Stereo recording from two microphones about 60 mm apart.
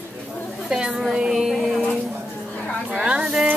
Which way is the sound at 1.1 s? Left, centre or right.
Centre.